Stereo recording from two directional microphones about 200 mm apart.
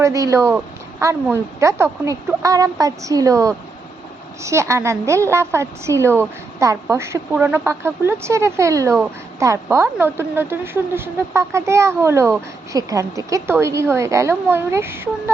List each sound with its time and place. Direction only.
0.0 s a woman's voice: 15° right (ahead or behind)